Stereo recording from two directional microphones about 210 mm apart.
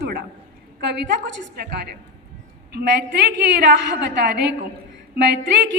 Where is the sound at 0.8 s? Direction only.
55° right (ahead or behind).